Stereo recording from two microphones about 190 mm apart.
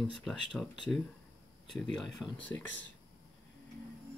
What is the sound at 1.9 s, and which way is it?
Speech, centre (ahead or behind).